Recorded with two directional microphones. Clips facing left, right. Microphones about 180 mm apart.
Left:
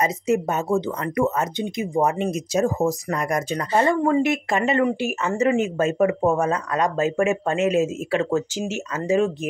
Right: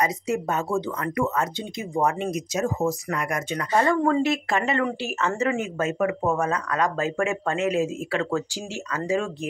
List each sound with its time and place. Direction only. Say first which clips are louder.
0.0 s speech: left 4 dB; 20° left (ahead or behind)
4.0 s speech: left 2 dB; 15° left (ahead or behind)